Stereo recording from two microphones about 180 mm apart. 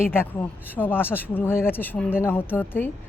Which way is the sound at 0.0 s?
10° left (ahead or behind).